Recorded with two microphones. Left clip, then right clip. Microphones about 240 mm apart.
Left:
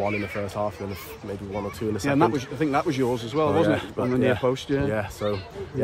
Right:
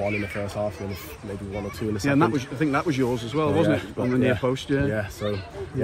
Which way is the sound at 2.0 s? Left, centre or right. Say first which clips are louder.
Even; left.